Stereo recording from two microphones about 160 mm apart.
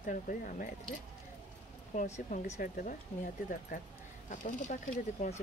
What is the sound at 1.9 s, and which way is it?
Speech, 50° left (ahead or behind).